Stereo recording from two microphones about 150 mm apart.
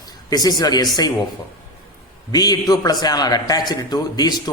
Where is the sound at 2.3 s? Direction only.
25° left (ahead or behind).